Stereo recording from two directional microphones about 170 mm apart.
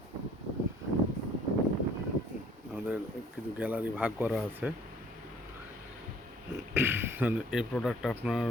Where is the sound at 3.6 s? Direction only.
10° right (ahead or behind).